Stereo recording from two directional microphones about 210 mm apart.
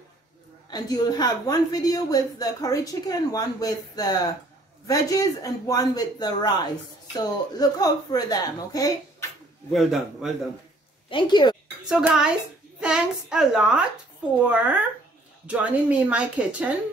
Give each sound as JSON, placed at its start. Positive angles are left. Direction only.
{"t": 0.7, "sound": "a woman's voice", "side_deg": 20}
{"t": 9.7, "sound": "a woman's voice", "side_deg": 0}
{"t": 11.1, "sound": "a woman's voice", "side_deg": 20}
{"t": 11.9, "sound": "a woman's voice", "side_deg": -5}